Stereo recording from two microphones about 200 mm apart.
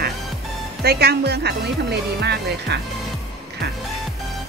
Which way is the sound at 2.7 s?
55° right (ahead or behind).